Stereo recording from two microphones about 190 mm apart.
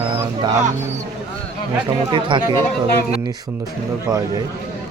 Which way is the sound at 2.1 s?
25° right (ahead or behind).